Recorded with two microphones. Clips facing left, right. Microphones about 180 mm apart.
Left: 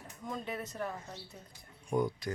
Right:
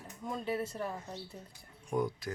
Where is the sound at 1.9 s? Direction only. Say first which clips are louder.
Left 1 dB; centre (ahead or behind).